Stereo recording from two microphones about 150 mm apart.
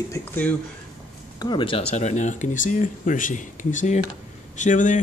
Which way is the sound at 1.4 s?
35° left (ahead or behind).